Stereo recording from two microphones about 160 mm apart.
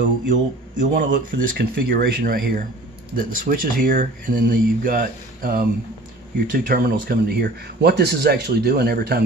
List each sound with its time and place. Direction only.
0.0 s speech: 55° right (ahead or behind)
1.6 s speech: 75° right (ahead or behind)